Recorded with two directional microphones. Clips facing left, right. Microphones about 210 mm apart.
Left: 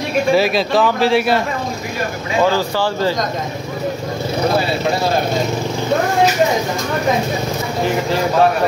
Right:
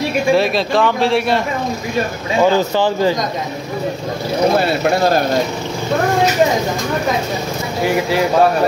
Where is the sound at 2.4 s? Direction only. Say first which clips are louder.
Right 3 dB; 20° right (ahead or behind).